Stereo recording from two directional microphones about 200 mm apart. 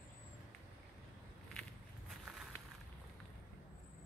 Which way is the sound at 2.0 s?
Centre (ahead or behind).